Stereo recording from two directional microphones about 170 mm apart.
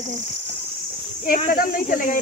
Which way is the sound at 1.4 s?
55° left (ahead or behind).